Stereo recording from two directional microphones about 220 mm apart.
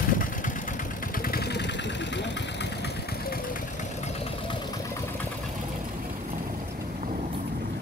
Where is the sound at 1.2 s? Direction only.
45° left (ahead or behind).